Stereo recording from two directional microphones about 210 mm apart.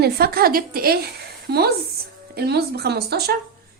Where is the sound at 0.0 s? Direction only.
45° right (ahead or behind).